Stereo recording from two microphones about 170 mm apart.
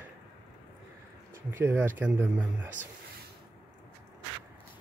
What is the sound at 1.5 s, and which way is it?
Speech, 10° right (ahead or behind).